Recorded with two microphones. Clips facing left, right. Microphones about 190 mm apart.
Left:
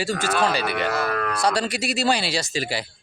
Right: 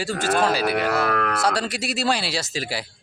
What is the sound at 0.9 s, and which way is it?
Speech, 65° right (ahead or behind).